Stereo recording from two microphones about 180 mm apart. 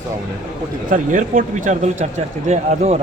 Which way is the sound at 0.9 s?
45° right (ahead or behind).